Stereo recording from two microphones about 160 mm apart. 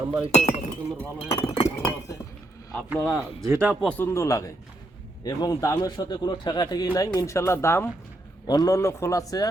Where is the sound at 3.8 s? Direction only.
10° left (ahead or behind).